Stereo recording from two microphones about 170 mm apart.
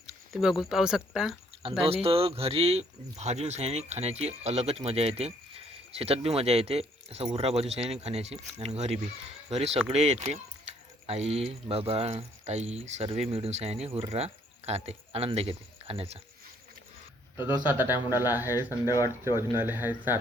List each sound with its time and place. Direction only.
0.3 s speech: centre (ahead or behind)
1.8 s speech: 35° right (ahead or behind)
17.3 s speech: 15° right (ahead or behind)
18.5 s speech: 20° left (ahead or behind)
19.4 s speech: 15° right (ahead or behind)